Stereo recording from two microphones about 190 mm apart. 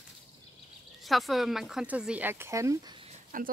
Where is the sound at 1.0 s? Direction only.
Centre (ahead or behind); by 3.1 s 20° right (ahead or behind).